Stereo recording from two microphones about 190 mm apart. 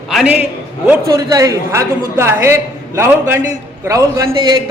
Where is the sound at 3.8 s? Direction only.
15° right (ahead or behind).